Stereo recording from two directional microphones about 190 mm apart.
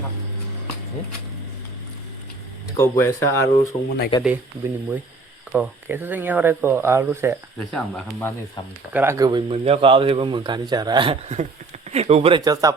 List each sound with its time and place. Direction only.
2.7 s speech: 15° left (ahead or behind)
4.1 s speech: 25° left (ahead or behind)
5.5 s speech: 10° right (ahead or behind)
7.7 s speech: 5° left (ahead or behind)
8.9 s speech: 10° right (ahead or behind)